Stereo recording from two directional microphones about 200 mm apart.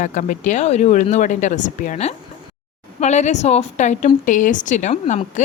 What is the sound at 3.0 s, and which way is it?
Speech, 35° left (ahead or behind).